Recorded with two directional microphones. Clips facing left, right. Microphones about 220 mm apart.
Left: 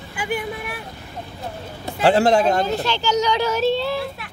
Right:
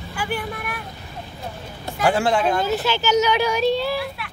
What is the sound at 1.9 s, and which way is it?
Speech, 35° left (ahead or behind).